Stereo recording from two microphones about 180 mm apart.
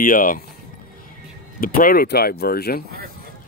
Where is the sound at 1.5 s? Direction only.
50° left (ahead or behind).